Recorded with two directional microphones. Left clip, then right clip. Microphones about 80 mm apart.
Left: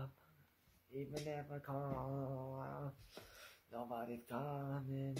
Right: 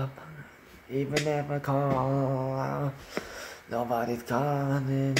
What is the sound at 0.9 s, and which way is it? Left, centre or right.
Mantra, right.